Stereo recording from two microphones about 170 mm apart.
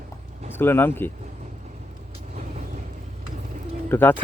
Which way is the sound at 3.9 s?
10° left (ahead or behind).